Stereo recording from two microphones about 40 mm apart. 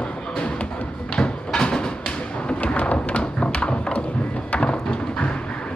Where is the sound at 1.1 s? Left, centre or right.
Centre.